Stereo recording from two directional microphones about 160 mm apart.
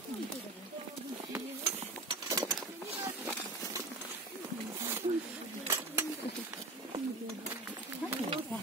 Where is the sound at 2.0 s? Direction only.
25° right (ahead or behind).